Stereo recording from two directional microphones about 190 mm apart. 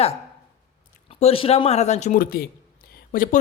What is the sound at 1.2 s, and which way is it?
Speech, 30° left (ahead or behind).